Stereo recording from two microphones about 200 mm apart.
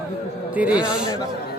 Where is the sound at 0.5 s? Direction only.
5° right (ahead or behind).